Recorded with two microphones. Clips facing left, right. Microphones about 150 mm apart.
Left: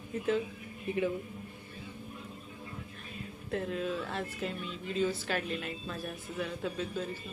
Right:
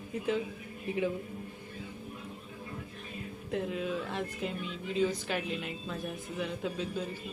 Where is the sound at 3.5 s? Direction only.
10° right (ahead or behind).